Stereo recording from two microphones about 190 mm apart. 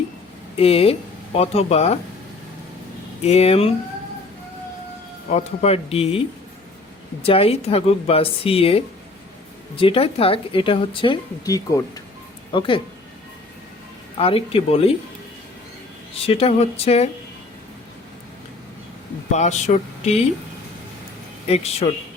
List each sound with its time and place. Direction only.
0.5 s speech: 30° left (ahead or behind)
3.2 s a woman's voice: 35° left (ahead or behind)
5.4 s a woman's voice: 35° left (ahead or behind)
14.2 s speech: 30° left (ahead or behind)
16.2 s a woman's voice: 30° left (ahead or behind)
19.3 s a woman's voice: 35° left (ahead or behind)
21.4 s a woman's voice: 30° left (ahead or behind)